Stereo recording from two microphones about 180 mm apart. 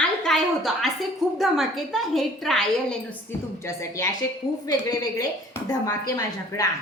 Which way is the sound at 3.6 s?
15° left (ahead or behind).